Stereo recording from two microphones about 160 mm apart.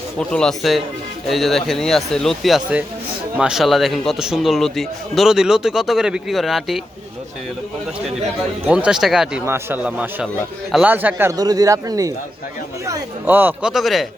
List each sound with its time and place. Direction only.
0.2 s a man's voice: 5° left (ahead or behind)
8.6 s a man's voice: 5° right (ahead or behind)
11.3 s a man's voice: 25° right (ahead or behind); by 14.1 s centre (ahead or behind)